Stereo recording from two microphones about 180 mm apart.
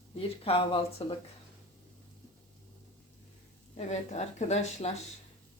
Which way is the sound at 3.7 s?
40° left (ahead or behind).